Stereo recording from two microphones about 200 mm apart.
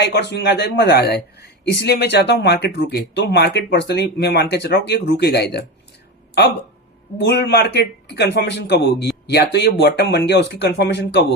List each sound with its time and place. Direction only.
0.0 s speech: 60° left (ahead or behind)
7.2 s speech: 55° left (ahead or behind)